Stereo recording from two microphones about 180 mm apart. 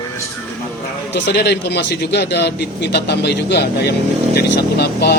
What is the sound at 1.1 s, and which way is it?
A man's voice, 65° left (ahead or behind).